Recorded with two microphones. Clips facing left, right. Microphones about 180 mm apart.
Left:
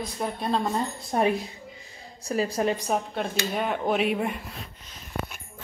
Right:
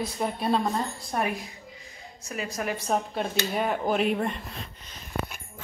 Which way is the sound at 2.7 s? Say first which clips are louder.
Even; 10° left (ahead or behind).